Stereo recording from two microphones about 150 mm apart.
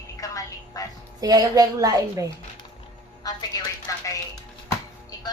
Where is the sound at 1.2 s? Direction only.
25° right (ahead or behind).